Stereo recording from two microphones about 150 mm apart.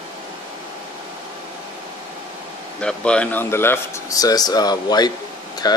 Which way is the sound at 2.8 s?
5° left (ahead or behind).